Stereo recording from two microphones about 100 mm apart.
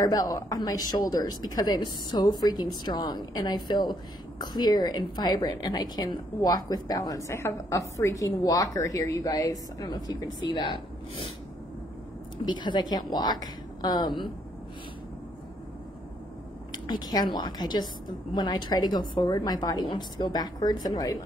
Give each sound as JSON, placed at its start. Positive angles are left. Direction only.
{"t": 0.0, "sound": "a woman's voice", "side_deg": 40}
{"t": 7.2, "sound": "a woman's voice", "side_deg": 30}
{"t": 12.4, "sound": "a woman's voice", "side_deg": 50}
{"t": 16.7, "sound": "a woman's voice", "side_deg": 45}